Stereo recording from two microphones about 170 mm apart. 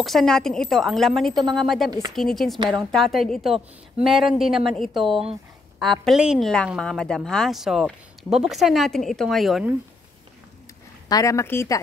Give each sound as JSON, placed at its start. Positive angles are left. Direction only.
{"t": 0.0, "sound": "a woman's voice", "side_deg": 0}
{"t": 1.9, "sound": "speech", "side_deg": -25}
{"t": 2.1, "sound": "a woman's voice", "side_deg": 0}
{"t": 11.1, "sound": "speech", "side_deg": 20}